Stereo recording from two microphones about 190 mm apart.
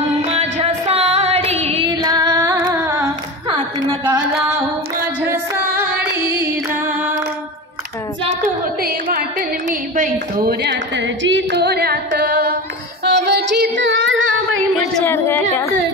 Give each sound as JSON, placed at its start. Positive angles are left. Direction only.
{"t": 0.3, "sound": "music", "side_deg": -30}
{"t": 1.9, "sound": "female singing", "side_deg": -20}
{"t": 3.5, "sound": "a sound", "side_deg": -25}
{"t": 5.8, "sound": "music", "side_deg": -10}
{"t": 8.4, "sound": "a sound", "side_deg": -50}
{"t": 10.3, "sound": "singing", "side_deg": -55}
{"t": 13.0, "sound": "female singing", "side_deg": -60}
{"t": 15.0, "sound": "speech", "side_deg": 10}